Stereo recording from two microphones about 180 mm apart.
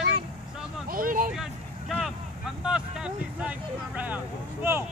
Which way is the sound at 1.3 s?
Centre (ahead or behind).